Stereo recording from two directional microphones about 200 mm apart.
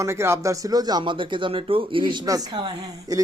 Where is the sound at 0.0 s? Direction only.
15° right (ahead or behind).